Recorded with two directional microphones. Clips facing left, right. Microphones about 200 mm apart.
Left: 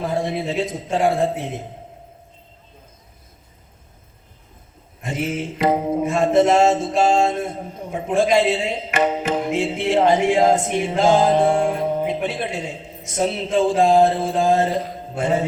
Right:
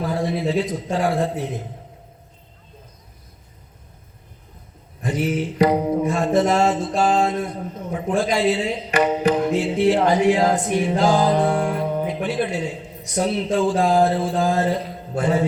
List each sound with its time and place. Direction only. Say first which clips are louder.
0.0 s mantra: right 1 dB; 25° left (ahead or behind)
5.0 s mantra: right 2 dB; 25° left (ahead or behind)